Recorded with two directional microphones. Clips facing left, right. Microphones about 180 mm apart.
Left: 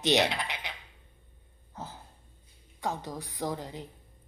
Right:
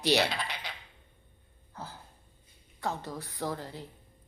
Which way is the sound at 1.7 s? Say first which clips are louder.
Left 1 dB; 20° left (ahead or behind).